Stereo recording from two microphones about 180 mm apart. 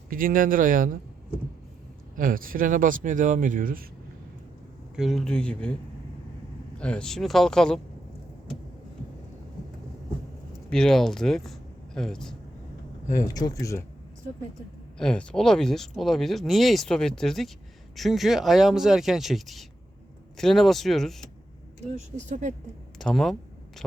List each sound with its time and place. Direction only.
0.1 s speech: 50° right (ahead or behind)
2.1 s speech: 50° right (ahead or behind)
4.9 s speech: centre (ahead or behind)
6.7 s speech: 5° left (ahead or behind)
10.7 s speech: 5° left (ahead or behind)
13.1 s speech: 20° left (ahead or behind)
14.9 s speech: 5° left (ahead or behind)
21.9 s speech: 40° right (ahead or behind)
23.0 s a sound: centre (ahead or behind)